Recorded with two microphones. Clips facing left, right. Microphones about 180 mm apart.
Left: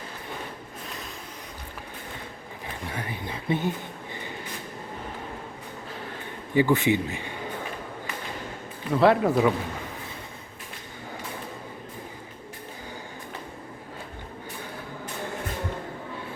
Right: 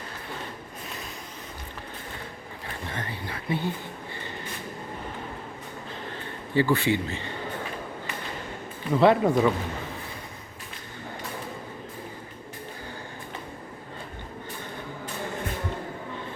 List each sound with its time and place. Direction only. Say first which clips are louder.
2.8 s speech: left 1 dB; 10° left (ahead or behind)
6.5 s speech: left 2 dB; 15° left (ahead or behind)
8.9 s speech: even; centre (ahead or behind)